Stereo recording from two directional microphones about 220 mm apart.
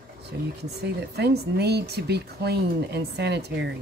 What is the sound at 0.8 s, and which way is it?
Speech, 50° right (ahead or behind).